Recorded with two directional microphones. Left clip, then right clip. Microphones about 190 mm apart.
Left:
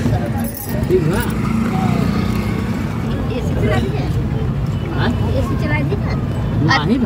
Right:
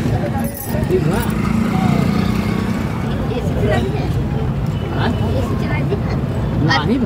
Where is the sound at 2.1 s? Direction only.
20° right (ahead or behind).